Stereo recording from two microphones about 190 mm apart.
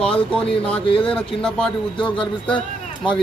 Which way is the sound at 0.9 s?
25° left (ahead or behind).